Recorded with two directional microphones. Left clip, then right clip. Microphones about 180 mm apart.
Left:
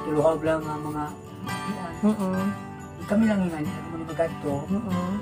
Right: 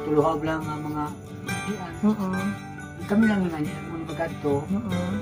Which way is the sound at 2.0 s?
15° left (ahead or behind).